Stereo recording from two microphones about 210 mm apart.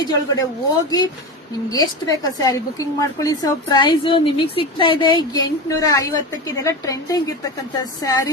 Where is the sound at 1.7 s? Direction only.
15° left (ahead or behind).